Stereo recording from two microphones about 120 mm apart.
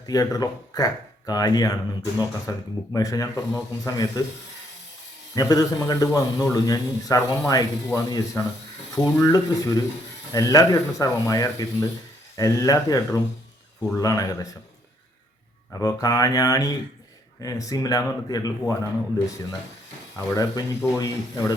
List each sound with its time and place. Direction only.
0.0 s a man's voice: 30° left (ahead or behind)
5.3 s a man's voice: 30° left (ahead or behind)
9.0 s a man's voice: 35° left (ahead or behind)
15.7 s a man's voice: 30° left (ahead or behind)